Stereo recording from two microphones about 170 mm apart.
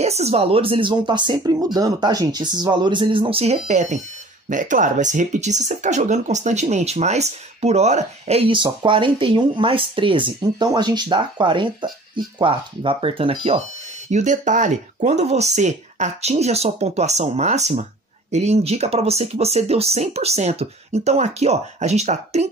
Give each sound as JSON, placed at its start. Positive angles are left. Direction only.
{"t": 0.0, "sound": "speech", "side_deg": -40}
{"t": 14.1, "sound": "speech", "side_deg": -45}